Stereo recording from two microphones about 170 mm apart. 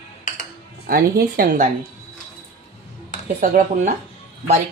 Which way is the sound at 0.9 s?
60° right (ahead or behind).